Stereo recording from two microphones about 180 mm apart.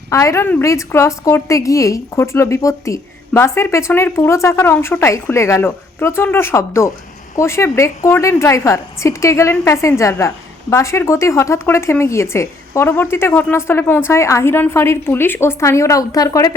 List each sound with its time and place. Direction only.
0.1 s a woman's voice: 15° left (ahead or behind)